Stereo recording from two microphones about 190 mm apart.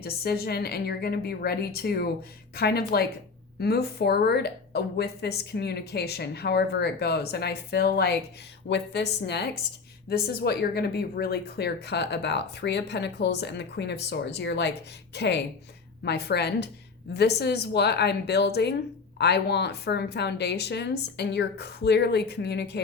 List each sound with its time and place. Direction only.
0.0 s a woman's voice: 55° left (ahead or behind)